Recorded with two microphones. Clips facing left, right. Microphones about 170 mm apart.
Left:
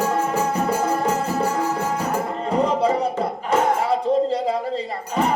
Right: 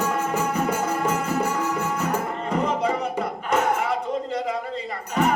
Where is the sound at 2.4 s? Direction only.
30° left (ahead or behind).